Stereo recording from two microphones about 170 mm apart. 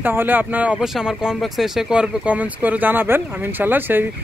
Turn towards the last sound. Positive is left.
turn(degrees=-10)  # may be behind; listen again after turning